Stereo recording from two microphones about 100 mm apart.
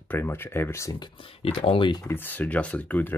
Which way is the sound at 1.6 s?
65° left (ahead or behind).